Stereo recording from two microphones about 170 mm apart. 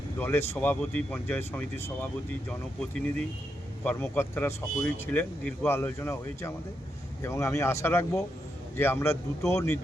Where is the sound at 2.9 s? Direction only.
5° left (ahead or behind).